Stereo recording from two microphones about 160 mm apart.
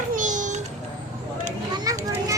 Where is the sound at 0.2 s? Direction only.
50° right (ahead or behind).